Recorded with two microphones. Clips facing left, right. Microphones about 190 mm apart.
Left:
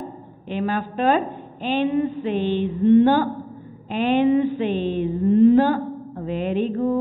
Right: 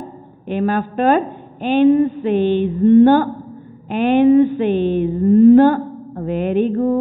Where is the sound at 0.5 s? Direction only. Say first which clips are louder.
Right 6 dB; 55° right (ahead or behind).